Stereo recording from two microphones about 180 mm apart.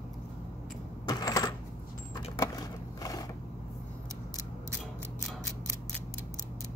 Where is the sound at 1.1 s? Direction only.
20° left (ahead or behind).